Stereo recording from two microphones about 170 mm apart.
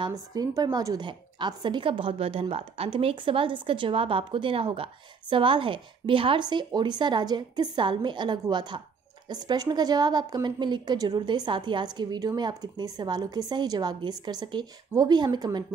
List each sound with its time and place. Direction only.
0.0 s a woman's voice: 20° right (ahead or behind)